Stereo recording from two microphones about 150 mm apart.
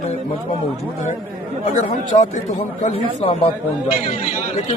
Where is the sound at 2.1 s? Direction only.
50° left (ahead or behind).